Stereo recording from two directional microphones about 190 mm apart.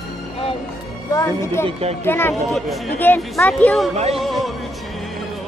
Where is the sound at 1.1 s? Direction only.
15° left (ahead or behind).